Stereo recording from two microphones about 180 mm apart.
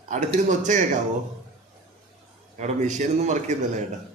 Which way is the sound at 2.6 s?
40° right (ahead or behind).